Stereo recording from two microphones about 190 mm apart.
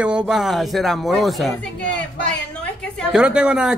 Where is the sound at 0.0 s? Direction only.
5° right (ahead or behind).